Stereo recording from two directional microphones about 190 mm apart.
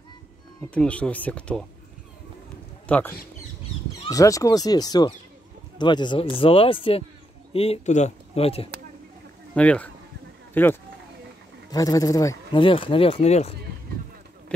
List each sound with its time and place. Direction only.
0.6 s speech: 5° left (ahead or behind)
2.9 s speech: 10° left (ahead or behind); by 8.6 s 30° left (ahead or behind)
9.6 s speech: 5° left (ahead or behind); by 13.6 s 35° left (ahead or behind)